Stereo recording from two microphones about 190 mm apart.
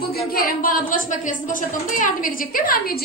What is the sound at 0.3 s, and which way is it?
A woman's voice, 50° left (ahead or behind).